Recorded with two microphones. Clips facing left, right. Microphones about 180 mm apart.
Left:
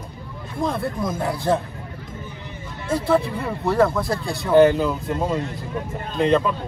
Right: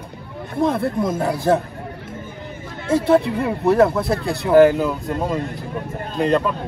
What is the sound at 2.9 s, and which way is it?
Speech, 25° right (ahead or behind).